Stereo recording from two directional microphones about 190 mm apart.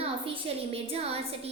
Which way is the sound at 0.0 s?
30° right (ahead or behind).